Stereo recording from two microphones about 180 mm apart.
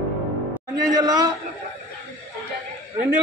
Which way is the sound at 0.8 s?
20° right (ahead or behind).